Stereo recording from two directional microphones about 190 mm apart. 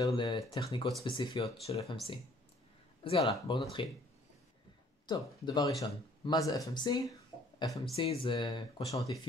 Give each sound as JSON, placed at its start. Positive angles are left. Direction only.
{"t": 0.0, "sound": "speech", "side_deg": 20}
{"t": 3.0, "sound": "speech", "side_deg": 30}
{"t": 5.0, "sound": "speech", "side_deg": 20}
{"t": 7.9, "sound": "speech", "side_deg": 30}